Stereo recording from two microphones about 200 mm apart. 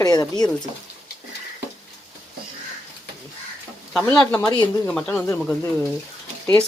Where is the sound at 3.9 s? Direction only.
5° left (ahead or behind).